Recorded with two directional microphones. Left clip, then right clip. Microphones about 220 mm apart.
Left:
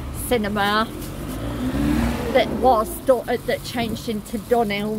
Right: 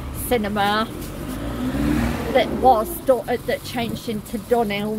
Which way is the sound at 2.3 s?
Centre (ahead or behind).